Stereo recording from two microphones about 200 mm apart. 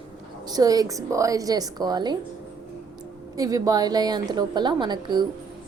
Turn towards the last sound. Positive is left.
turn(degrees=-20)  # may be behind; listen again after turning